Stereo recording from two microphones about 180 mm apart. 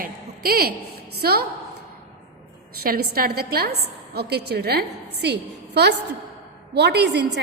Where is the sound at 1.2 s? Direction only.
60° right (ahead or behind).